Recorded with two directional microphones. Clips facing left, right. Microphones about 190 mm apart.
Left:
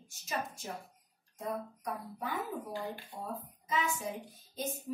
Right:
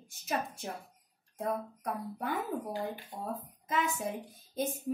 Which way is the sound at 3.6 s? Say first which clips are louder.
Right 2 dB; 55° right (ahead or behind).